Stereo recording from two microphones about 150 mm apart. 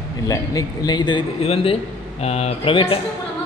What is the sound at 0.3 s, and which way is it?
Speech, 25° left (ahead or behind).